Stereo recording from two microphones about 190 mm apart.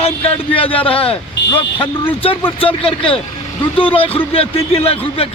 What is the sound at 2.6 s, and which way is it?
Speech, 30° left (ahead or behind).